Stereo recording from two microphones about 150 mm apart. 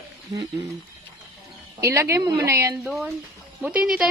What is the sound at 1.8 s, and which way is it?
Speech, 20° right (ahead or behind).